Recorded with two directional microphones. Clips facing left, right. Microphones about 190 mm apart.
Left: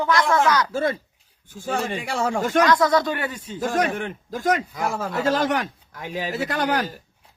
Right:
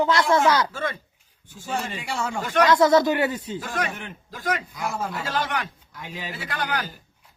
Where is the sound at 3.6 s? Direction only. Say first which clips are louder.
Left 7 dB; 45° left (ahead or behind).